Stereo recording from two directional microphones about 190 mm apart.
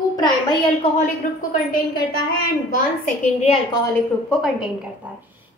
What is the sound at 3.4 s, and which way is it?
Speech, 30° left (ahead or behind).